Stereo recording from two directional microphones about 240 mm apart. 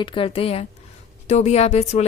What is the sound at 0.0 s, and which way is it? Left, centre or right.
A woman's voice, left.